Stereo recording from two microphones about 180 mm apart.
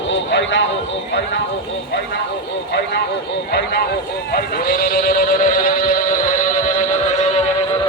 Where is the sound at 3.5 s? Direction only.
65° left (ahead or behind); by 7.2 s 40° left (ahead or behind).